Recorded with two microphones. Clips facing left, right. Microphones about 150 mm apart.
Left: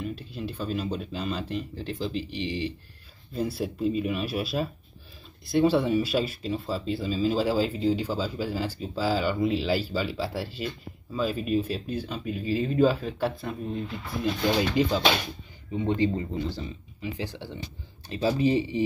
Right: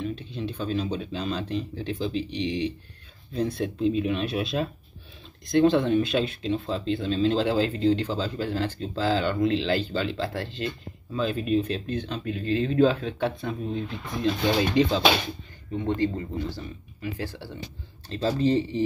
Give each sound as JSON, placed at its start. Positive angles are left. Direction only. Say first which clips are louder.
{"t": 0.0, "sound": "speech", "louder": "right 2 dB", "side_deg": 5}
{"t": 15.7, "sound": "speech", "louder": "left 1 dB", "side_deg": 10}